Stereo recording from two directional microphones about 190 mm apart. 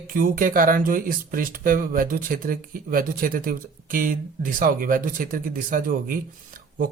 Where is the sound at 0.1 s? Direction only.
45° right (ahead or behind).